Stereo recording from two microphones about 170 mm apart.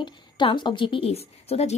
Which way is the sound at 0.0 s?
30° left (ahead or behind).